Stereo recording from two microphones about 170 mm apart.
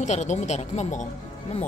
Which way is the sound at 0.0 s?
45° left (ahead or behind).